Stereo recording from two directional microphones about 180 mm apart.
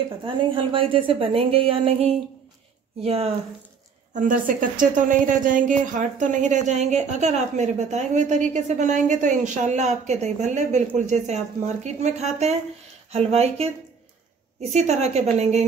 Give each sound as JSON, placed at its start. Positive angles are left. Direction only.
{"t": 0.2, "sound": "a woman's voice", "side_deg": -30}
{"t": 4.1, "sound": "a woman's voice", "side_deg": -45}